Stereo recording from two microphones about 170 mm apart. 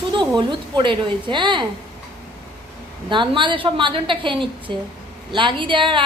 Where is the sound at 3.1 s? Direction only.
30° right (ahead or behind).